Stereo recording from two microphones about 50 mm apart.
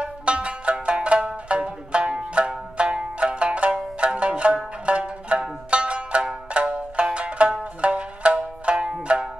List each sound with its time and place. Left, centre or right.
0.0 s music: right
4.8 s zither: right
5.7 s music: right